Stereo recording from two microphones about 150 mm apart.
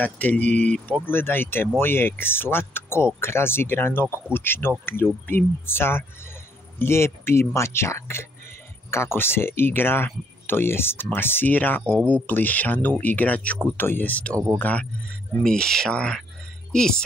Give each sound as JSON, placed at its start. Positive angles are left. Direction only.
{"t": 0.0, "sound": "speech", "side_deg": 10}
{"t": 14.3, "sound": "speech", "side_deg": -20}
{"t": 14.6, "sound": "speech", "side_deg": 10}